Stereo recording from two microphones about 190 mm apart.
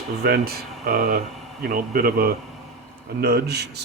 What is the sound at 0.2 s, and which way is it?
A man's voice, 55° right (ahead or behind).